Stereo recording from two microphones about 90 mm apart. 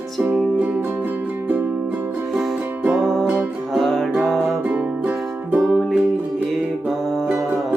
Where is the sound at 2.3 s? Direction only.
10° right (ahead or behind).